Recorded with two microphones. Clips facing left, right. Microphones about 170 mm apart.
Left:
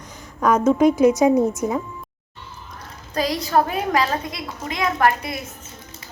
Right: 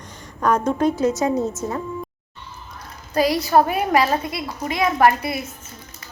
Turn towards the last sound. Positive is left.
turn(degrees=-10)  # may be behind; listen again after turning